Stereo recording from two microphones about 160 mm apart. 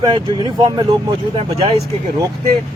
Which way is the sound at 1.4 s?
40° right (ahead or behind).